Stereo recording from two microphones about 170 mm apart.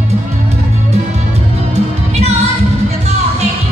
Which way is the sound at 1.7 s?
40° right (ahead or behind).